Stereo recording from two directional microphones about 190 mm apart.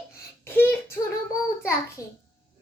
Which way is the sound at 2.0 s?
15° left (ahead or behind).